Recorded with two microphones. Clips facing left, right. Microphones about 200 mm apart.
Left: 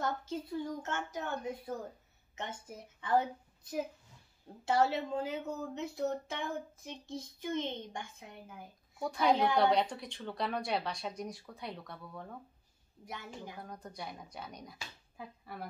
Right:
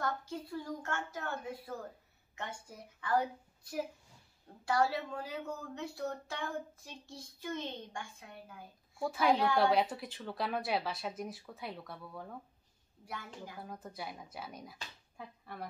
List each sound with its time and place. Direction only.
0.0 s a woman's voice: 20° left (ahead or behind)
9.0 s speech: 5° right (ahead or behind)
13.0 s a woman's voice: 20° left (ahead or behind)
13.6 s speech: 5° right (ahead or behind)